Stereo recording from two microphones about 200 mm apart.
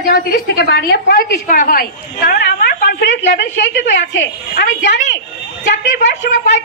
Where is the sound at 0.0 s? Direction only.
50° left (ahead or behind).